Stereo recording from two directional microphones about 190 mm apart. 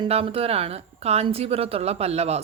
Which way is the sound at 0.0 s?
30° right (ahead or behind).